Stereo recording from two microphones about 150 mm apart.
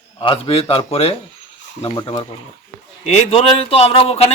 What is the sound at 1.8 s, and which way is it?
Speech, 30° left (ahead or behind).